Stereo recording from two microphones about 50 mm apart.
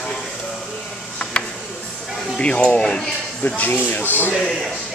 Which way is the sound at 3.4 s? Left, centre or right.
Left.